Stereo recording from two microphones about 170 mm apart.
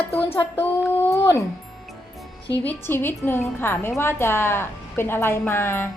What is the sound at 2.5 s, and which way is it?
A woman's voice, 10° left (ahead or behind).